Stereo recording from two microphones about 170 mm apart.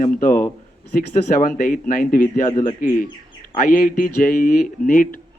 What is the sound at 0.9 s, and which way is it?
A man's voice, 55° left (ahead or behind).